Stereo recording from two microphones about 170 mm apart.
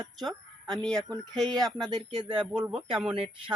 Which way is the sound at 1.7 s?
30° right (ahead or behind).